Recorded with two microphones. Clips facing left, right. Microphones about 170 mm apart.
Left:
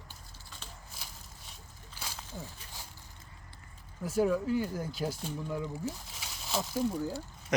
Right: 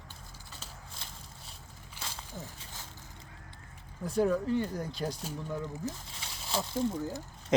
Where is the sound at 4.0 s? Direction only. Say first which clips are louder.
Even; 5° left (ahead or behind).